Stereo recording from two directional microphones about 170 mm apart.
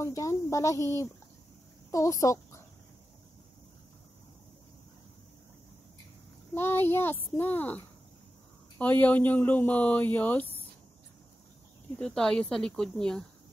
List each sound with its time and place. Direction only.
0.0 s a child's voice: 15° left (ahead or behind)
6.5 s speech: 15° left (ahead or behind)
12.0 s speech: 5° left (ahead or behind)